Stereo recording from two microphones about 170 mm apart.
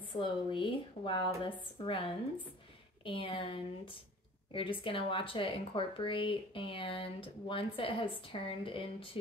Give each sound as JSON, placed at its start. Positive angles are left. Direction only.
{"t": 0.1, "sound": "speech", "side_deg": 30}